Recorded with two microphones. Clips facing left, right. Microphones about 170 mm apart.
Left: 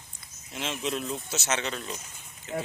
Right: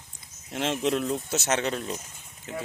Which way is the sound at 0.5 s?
60° right (ahead or behind).